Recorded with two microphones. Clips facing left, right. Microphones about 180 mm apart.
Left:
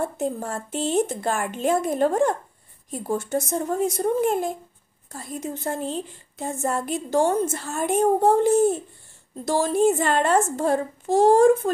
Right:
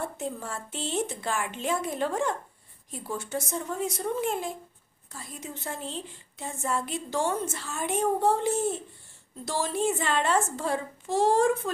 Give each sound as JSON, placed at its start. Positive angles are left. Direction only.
{"t": 0.0, "sound": "a woman's voice", "side_deg": 45}